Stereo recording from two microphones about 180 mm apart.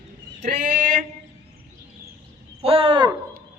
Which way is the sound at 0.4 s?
40° right (ahead or behind).